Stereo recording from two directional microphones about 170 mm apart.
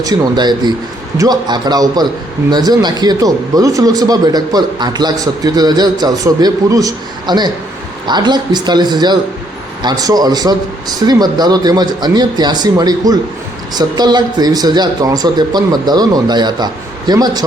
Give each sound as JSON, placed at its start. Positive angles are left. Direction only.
{"t": 0.0, "sound": "speech", "side_deg": -25}